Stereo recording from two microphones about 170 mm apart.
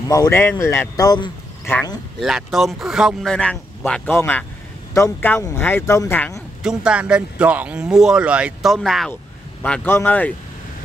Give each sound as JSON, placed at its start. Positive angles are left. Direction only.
{"t": 0.1, "sound": "speech", "side_deg": 15}
{"t": 2.1, "sound": "speech", "side_deg": 0}
{"t": 6.6, "sound": "speech", "side_deg": -5}
{"t": 9.6, "sound": "speech", "side_deg": 10}